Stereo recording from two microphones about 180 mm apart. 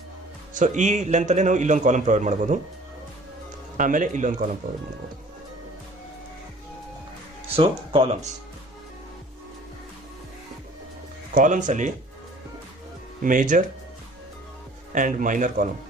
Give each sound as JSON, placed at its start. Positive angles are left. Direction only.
{"t": 0.6, "sound": "a man's voice", "side_deg": -45}
{"t": 3.7, "sound": "a man's voice", "side_deg": -45}
{"t": 7.5, "sound": "speech", "side_deg": -30}
{"t": 11.3, "sound": "a man's voice", "side_deg": -45}
{"t": 13.2, "sound": "a man's voice", "side_deg": -45}
{"t": 14.9, "sound": "a man's voice", "side_deg": -45}